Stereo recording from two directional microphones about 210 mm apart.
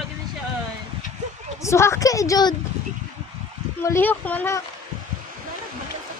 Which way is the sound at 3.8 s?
10° left (ahead or behind).